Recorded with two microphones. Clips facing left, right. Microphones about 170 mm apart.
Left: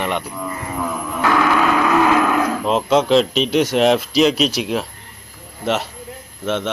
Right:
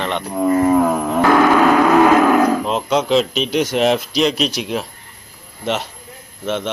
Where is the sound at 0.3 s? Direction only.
45° right (ahead or behind).